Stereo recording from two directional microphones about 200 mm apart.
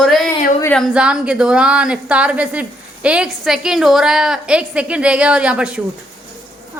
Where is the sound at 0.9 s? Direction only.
5° right (ahead or behind).